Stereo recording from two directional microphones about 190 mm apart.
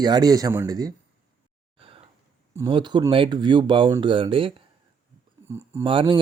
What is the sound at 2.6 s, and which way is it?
Speech, 25° right (ahead or behind).